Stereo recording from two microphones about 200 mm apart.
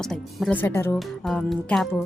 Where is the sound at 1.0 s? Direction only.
Centre (ahead or behind).